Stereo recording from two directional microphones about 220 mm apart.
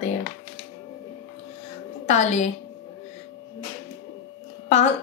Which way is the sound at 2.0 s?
30° left (ahead or behind).